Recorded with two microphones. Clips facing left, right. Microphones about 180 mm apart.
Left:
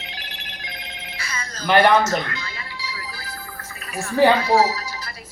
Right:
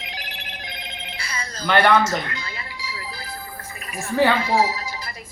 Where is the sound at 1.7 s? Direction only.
10° left (ahead or behind).